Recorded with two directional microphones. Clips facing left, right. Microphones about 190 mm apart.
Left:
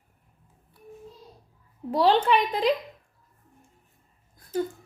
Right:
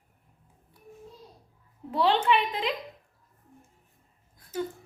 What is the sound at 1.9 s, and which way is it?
Speech, 40° left (ahead or behind).